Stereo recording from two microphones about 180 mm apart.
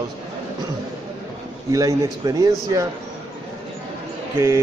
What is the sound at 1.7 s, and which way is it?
A man's voice, 20° right (ahead or behind).